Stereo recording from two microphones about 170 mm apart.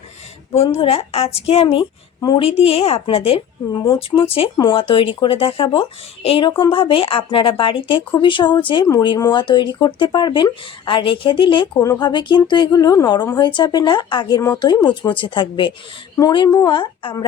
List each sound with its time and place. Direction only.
0.8 s a woman's voice: 35° left (ahead or behind)